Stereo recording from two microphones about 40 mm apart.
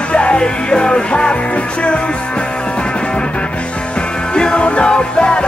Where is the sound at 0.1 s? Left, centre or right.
Left.